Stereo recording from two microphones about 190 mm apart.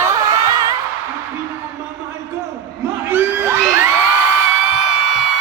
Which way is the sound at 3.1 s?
10° right (ahead or behind).